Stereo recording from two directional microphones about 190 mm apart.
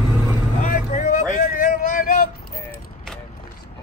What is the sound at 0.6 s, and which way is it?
Vehicle, 40° left (ahead or behind).